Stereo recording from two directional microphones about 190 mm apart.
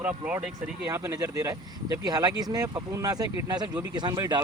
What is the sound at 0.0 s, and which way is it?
Speech, 5° right (ahead or behind).